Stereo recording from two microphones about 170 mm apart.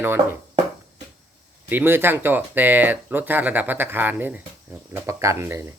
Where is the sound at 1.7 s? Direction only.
10° right (ahead or behind).